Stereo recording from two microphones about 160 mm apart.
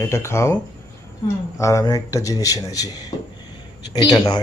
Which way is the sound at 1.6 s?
20° left (ahead or behind).